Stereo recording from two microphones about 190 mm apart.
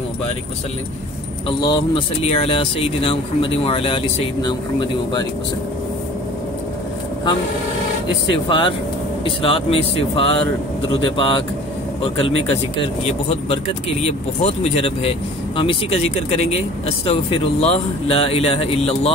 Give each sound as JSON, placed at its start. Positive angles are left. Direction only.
{"t": 1.6, "sound": "speech", "side_deg": 25}
{"t": 8.5, "sound": "speech", "side_deg": 25}
{"t": 13.3, "sound": "speech", "side_deg": 30}